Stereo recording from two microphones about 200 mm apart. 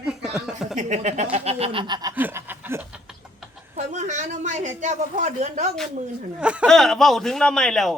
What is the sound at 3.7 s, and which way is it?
A man's voice, 35° right (ahead or behind).